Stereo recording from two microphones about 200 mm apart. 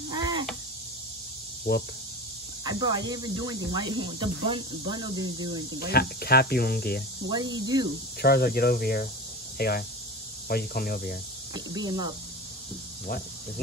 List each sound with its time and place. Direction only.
0.1 s a sound: 20° right (ahead or behind)
1.7 s speech: 50° left (ahead or behind)
2.6 s speech: 20° right (ahead or behind)
5.8 s speech: 50° left (ahead or behind)
7.2 s speech: 20° right (ahead or behind)
8.2 s speech: 50° left (ahead or behind)
11.5 s speech: 20° right (ahead or behind)